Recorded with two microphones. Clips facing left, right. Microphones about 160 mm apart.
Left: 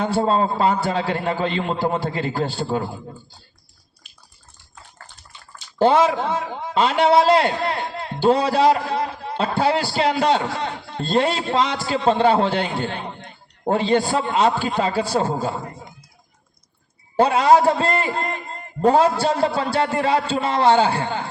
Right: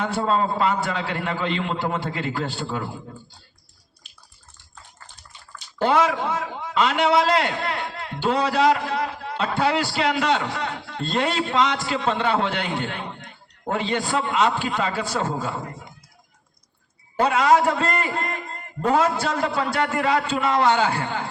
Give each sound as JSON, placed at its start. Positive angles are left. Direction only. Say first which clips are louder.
{"t": 0.0, "sound": "a man's voice", "louder": "left 3 dB", "side_deg": 30}
{"t": 5.8, "sound": "a man's voice", "louder": "left 4 dB", "side_deg": 30}
{"t": 17.2, "sound": "a man's voice", "louder": "left 3 dB", "side_deg": 30}